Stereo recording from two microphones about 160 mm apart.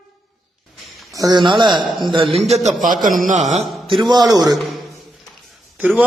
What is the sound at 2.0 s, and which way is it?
Speech, 30° right (ahead or behind).